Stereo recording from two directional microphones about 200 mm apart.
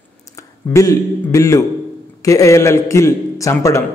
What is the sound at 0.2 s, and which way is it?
A man's voice, 15° left (ahead or behind).